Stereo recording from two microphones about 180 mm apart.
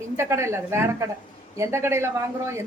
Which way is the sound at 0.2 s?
15° right (ahead or behind).